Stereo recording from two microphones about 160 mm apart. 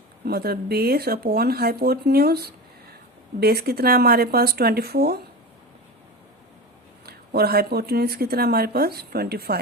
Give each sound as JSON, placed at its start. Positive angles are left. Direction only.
{"t": 0.3, "sound": "speech", "side_deg": -75}
{"t": 7.0, "sound": "speech", "side_deg": -80}